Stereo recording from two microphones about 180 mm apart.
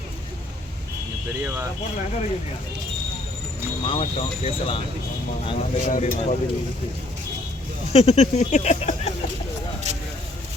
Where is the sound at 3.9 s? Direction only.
30° left (ahead or behind).